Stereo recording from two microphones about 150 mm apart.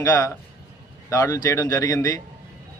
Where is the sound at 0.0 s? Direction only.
25° left (ahead or behind).